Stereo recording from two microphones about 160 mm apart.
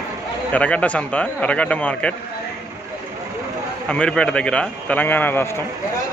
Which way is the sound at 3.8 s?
5° left (ahead or behind).